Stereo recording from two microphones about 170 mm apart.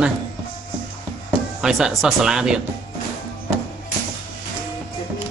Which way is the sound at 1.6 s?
5° right (ahead or behind).